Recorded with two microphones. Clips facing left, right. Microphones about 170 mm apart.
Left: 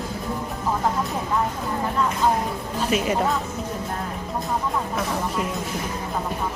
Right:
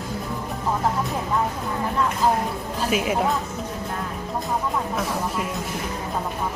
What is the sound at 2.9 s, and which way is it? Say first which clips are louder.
Speech: even; 5° right (ahead or behind).